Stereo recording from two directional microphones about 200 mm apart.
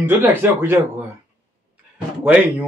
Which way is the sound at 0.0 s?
10° right (ahead or behind).